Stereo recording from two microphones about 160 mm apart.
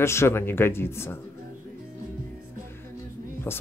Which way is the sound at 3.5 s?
15° left (ahead or behind).